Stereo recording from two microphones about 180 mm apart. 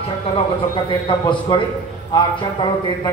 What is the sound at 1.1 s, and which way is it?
A man's voice, 25° left (ahead or behind).